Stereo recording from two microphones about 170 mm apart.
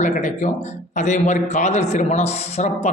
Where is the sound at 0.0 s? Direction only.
45° left (ahead or behind).